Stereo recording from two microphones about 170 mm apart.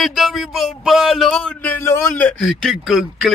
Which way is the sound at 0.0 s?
Centre (ahead or behind).